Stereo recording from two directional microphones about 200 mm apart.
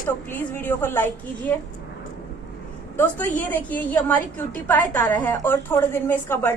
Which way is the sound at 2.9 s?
10° left (ahead or behind).